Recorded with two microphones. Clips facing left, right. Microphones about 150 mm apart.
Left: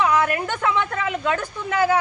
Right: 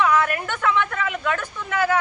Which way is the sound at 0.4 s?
30° left (ahead or behind).